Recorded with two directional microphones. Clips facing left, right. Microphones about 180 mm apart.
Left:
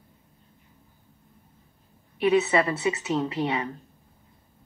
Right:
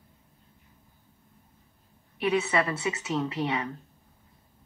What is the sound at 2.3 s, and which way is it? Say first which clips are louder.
A woman's voice: left 4 dB; 30° left (ahead or behind).